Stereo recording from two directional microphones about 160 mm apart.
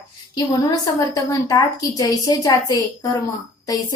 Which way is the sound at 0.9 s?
20° left (ahead or behind).